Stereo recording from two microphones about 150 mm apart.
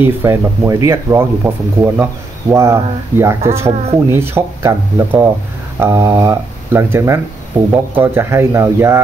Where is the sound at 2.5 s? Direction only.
20° right (ahead or behind).